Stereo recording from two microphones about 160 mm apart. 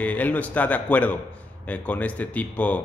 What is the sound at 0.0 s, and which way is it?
A man's voice, 10° left (ahead or behind).